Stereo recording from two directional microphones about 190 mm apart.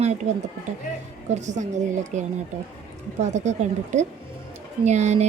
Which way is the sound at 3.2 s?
35° right (ahead or behind).